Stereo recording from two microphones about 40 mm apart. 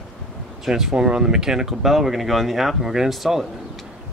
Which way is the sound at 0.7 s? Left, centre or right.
Centre.